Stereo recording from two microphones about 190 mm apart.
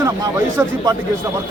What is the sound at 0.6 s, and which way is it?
Speech, 10° right (ahead or behind).